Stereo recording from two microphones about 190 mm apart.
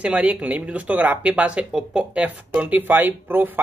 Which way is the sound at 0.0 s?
5° right (ahead or behind).